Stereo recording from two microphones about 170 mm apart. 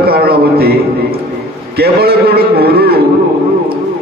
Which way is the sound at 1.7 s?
65° right (ahead or behind).